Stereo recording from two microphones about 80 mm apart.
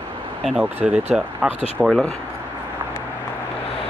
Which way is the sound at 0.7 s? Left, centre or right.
Centre.